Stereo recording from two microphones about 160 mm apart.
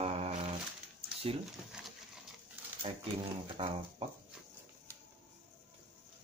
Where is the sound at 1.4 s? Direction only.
Centre (ahead or behind).